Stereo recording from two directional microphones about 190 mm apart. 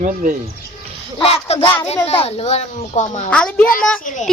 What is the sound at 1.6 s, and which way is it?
Speech, 10° left (ahead or behind).